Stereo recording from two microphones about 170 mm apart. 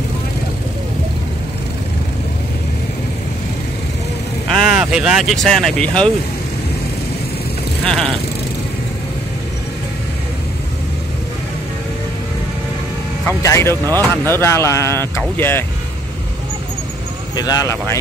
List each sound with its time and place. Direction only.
4.5 s speech: centre (ahead or behind)
7.8 s vehicle: 5° left (ahead or behind)
13.4 s speech: 20° left (ahead or behind)
13.8 s speech: 20° right (ahead or behind)
14.4 s speech: 15° left (ahead or behind)
17.4 s speech: 20° left (ahead or behind)